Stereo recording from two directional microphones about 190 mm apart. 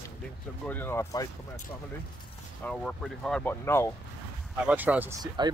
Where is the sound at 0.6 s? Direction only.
10° left (ahead or behind).